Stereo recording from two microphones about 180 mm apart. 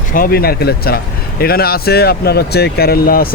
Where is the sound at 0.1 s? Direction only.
55° left (ahead or behind).